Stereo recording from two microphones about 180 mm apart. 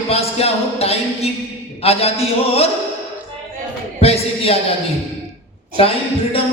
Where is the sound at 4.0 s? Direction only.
35° left (ahead or behind).